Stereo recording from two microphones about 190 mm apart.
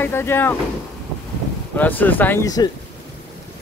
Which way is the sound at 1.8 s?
10° left (ahead or behind).